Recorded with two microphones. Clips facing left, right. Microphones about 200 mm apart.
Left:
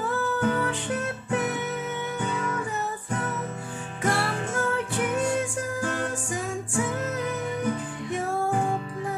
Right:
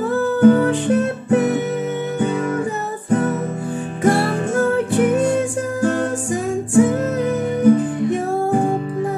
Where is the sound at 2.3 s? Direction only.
55° right (ahead or behind).